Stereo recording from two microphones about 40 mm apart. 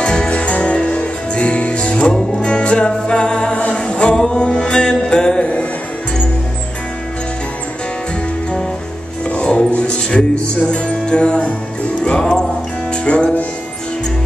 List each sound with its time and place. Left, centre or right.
0.0 s music: left
5.4 s music: left
9.2 s music: left